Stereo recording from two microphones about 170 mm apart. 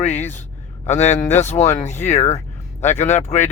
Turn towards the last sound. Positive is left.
turn(degrees=40)  # may be behind; listen again after turning